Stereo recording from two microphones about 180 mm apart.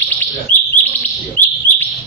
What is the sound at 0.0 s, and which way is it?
Bird, 10° left (ahead or behind).